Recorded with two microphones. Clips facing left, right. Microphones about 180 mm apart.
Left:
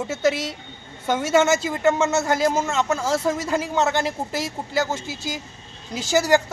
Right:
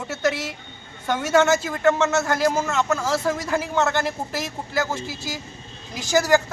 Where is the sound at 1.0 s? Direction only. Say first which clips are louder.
Even; 20° left (ahead or behind).